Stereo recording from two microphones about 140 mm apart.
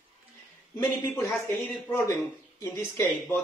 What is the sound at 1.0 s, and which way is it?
Speech, 15° left (ahead or behind).